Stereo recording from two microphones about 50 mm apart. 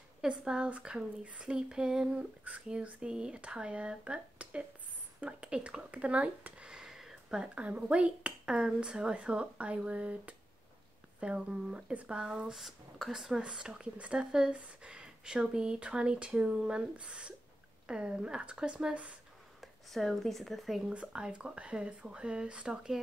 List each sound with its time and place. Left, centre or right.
0.2 s speech: centre
2.4 s speech: right; by 7.4 s centre
7.4 s speech: right
12.2 s speech: centre
13.4 s speech: centre
19.6 s speech: centre
20.9 s speech: right